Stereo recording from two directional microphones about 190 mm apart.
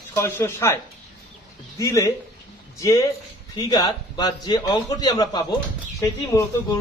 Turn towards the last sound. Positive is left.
turn(degrees=20)  # may be behind; listen again after turning